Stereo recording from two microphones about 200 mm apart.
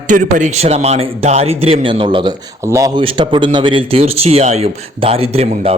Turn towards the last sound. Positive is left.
turn(degrees=-30)  # may be behind; listen again after turning